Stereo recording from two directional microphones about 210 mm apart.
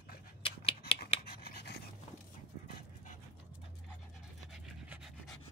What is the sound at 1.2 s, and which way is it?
Dog, 45° left (ahead or behind).